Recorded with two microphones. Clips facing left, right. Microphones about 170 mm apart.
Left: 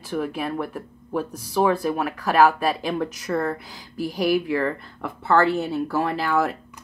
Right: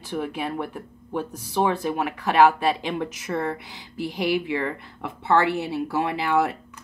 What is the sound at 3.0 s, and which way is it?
Speech, 20° right (ahead or behind).